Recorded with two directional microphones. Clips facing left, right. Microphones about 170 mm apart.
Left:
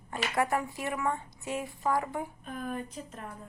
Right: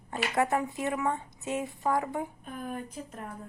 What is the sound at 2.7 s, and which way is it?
Speech, 10° right (ahead or behind).